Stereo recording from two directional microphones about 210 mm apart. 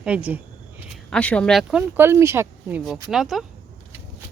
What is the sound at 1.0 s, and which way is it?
Speech, 5° left (ahead or behind).